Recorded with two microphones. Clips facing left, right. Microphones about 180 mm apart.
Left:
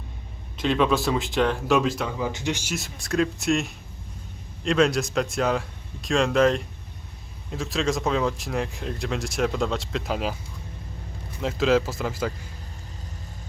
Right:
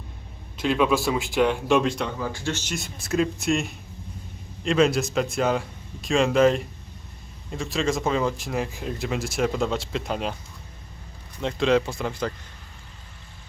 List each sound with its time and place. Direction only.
0.5 s speech: 5° right (ahead or behind)
2.1 s speech: 15° left (ahead or behind)
2.7 s speech: centre (ahead or behind)
11.3 s speech: 5° left (ahead or behind)